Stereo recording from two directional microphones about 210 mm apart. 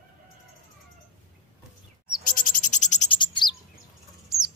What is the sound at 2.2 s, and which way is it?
Frog, 40° left (ahead or behind).